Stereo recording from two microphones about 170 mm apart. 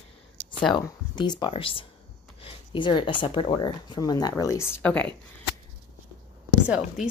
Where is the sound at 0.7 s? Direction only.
25° left (ahead or behind).